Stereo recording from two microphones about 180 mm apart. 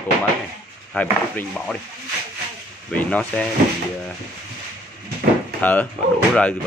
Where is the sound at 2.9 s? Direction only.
10° left (ahead or behind).